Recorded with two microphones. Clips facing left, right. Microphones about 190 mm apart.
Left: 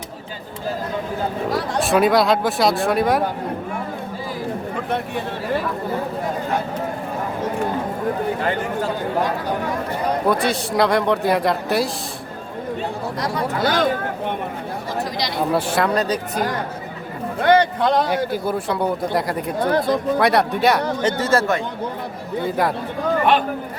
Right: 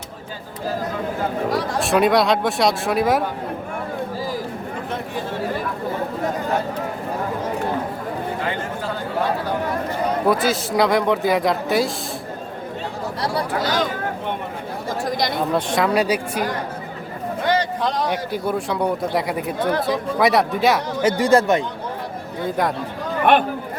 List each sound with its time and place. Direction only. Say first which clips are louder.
1.5 s speech: left 2 dB; centre (ahead or behind)
10.2 s speech: right 2 dB; centre (ahead or behind)
13.6 s speech: left 5 dB; 55° left (ahead or behind)
15.5 s speech: left 1 dB; 5° left (ahead or behind)
16.0 s speech: right 1 dB; 10° right (ahead or behind)
17.4 s a sound: left 5 dB; 60° left (ahead or behind)
18.3 s speech: left 1 dB; centre (ahead or behind); by 21.6 s 15° right (ahead or behind)
22.4 s speech: left 1 dB; 5° left (ahead or behind)